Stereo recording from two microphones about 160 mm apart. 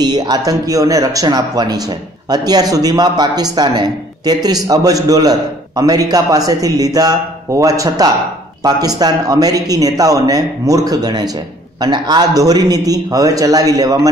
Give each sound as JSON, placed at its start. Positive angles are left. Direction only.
{"t": 0.0, "sound": "speech", "side_deg": -25}